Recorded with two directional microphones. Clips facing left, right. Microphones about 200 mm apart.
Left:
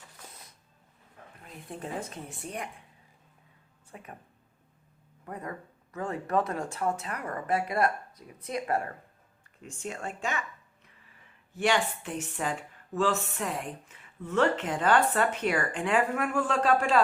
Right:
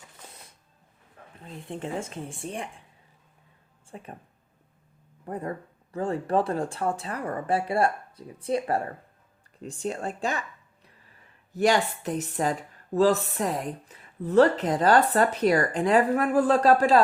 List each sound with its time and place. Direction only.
1.4 s speech: 25° right (ahead or behind)
3.9 s speech: 30° right (ahead or behind)
5.2 s speech: 30° right (ahead or behind)
11.5 s speech: 40° right (ahead or behind)